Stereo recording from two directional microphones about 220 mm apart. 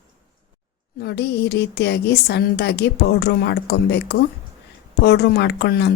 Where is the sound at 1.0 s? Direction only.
50° left (ahead or behind).